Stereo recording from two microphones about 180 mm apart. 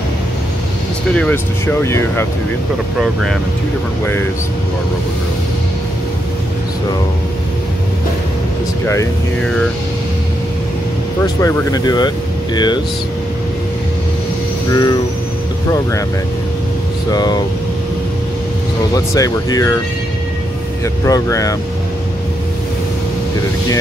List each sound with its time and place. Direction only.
1.1 s speech: 5° left (ahead or behind)
3.0 s speech: 5° right (ahead or behind)
11.4 s speech: 20° left (ahead or behind)
14.7 s speech: 20° left (ahead or behind)
17.1 s speech: 20° left (ahead or behind)
18.9 s speech: 20° left (ahead or behind)
20.8 s speech: 15° left (ahead or behind)